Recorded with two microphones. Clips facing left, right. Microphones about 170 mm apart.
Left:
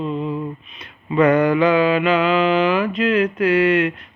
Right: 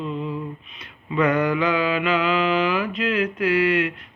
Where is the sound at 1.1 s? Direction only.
50° left (ahead or behind).